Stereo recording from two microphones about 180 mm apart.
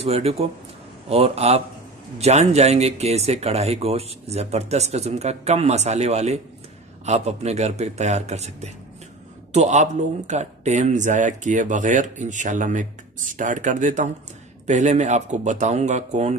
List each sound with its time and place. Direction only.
0.0 s speech: 35° right (ahead or behind)